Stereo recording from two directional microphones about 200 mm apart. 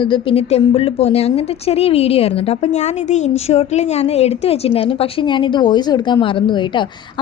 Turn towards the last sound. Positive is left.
turn(degrees=25)  # may be behind; listen again after turning